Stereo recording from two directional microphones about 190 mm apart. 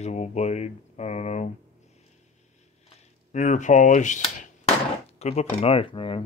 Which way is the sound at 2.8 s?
35° left (ahead or behind).